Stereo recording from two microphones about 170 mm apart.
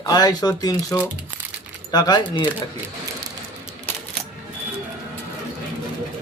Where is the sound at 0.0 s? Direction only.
20° left (ahead or behind).